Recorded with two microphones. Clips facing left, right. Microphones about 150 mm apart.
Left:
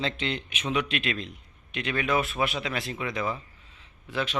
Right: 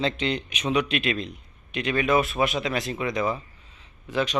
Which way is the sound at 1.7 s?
15° right (ahead or behind).